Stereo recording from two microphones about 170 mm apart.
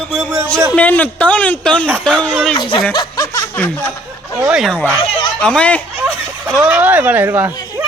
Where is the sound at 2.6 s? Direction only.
30° left (ahead or behind).